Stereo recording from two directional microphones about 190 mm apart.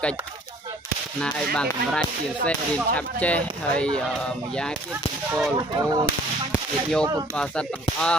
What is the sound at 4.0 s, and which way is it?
Whip, 5° left (ahead or behind).